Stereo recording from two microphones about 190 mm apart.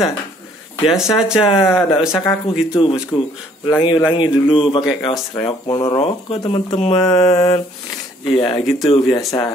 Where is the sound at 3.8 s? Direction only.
25° left (ahead or behind).